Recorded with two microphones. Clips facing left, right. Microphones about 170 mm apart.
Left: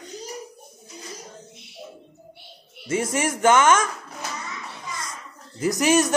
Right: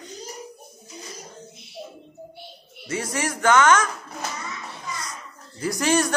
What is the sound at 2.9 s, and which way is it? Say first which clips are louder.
Speech: left 3 dB; 25° left (ahead or behind).